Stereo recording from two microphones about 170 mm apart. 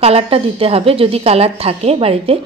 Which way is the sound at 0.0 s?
35° right (ahead or behind).